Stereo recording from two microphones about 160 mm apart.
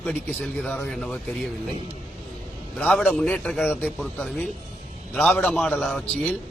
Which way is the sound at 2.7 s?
5° left (ahead or behind).